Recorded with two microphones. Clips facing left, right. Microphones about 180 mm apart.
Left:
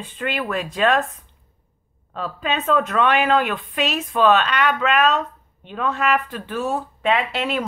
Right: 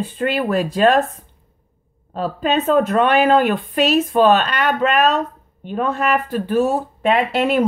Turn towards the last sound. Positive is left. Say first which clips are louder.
# right 7 dB
turn(degrees=-45)  # may be behind; listen again after turning